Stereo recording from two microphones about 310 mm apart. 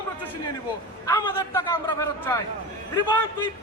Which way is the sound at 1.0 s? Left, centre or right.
Centre.